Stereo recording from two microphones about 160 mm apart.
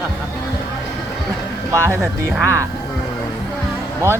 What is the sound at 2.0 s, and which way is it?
Speech, 5° right (ahead or behind).